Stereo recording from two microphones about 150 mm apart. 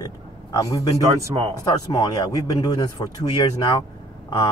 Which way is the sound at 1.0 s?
20° right (ahead or behind).